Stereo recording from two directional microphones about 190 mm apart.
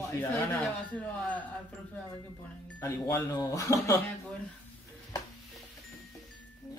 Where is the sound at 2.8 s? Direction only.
15° left (ahead or behind).